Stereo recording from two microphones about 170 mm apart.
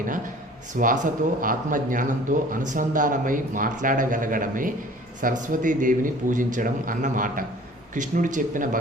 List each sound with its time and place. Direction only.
0.8 s a man's voice: 50° right (ahead or behind)